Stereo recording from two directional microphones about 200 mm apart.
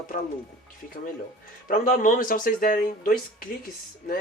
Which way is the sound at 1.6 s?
40° left (ahead or behind).